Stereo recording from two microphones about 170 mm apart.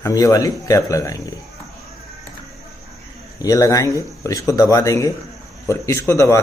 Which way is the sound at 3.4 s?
20° left (ahead or behind).